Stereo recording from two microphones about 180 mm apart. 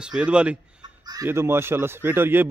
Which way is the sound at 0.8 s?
20° right (ahead or behind).